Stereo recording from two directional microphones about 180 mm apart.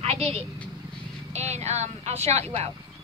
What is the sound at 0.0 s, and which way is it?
Vehicle, 35° right (ahead or behind).